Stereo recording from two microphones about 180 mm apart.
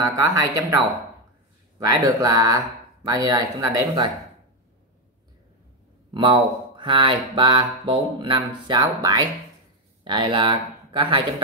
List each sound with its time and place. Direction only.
0.0 s speech: 20° right (ahead or behind)
1.9 s speech: 20° right (ahead or behind)
6.1 s speech: 25° right (ahead or behind)